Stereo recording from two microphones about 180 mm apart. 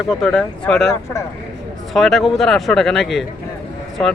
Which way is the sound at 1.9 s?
Centre (ahead or behind).